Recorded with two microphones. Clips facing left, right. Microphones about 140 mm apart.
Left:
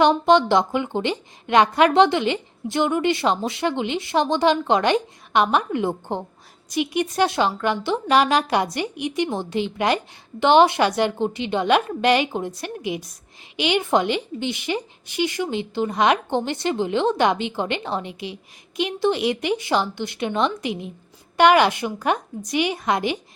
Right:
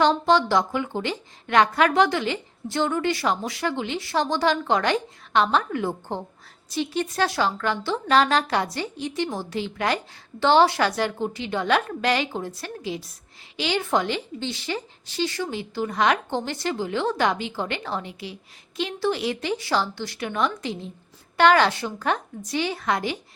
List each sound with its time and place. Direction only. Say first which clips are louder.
0.0 s a woman's voice: left 3 dB; 20° left (ahead or behind)